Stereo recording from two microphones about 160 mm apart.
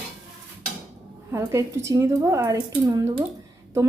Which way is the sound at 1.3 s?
20° right (ahead or behind).